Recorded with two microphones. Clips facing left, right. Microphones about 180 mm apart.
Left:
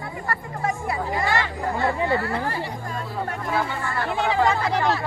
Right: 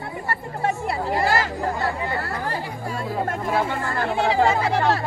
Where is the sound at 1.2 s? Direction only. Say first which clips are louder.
Right 3 dB; 40° right (ahead or behind).